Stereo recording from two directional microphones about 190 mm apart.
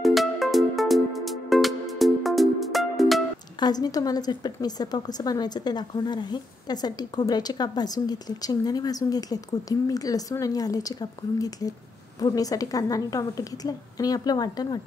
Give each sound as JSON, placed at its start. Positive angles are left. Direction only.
{"t": 0.0, "sound": "music", "side_deg": 0}
{"t": 3.5, "sound": "a woman's voice", "side_deg": 20}